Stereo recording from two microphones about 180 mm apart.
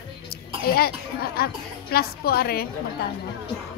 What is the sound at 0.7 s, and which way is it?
A woman's voice, 60° left (ahead or behind).